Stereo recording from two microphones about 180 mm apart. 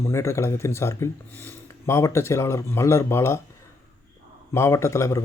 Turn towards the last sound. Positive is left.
turn(degrees=15)  # may be behind; listen again after turning